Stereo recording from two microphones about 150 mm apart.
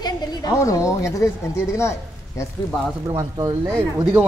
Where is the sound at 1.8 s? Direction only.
20° left (ahead or behind).